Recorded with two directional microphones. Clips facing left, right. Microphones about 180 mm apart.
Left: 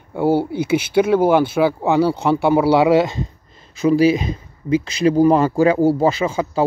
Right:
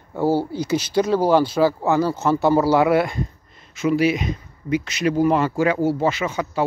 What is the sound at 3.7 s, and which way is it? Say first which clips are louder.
Speech: left 5 dB; 35° left (ahead or behind).